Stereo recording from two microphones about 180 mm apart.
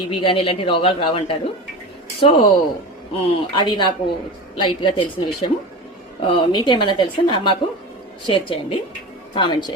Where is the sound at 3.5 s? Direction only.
25° left (ahead or behind).